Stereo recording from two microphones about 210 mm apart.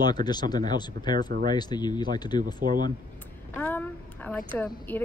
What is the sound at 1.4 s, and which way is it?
Speech, 20° left (ahead or behind).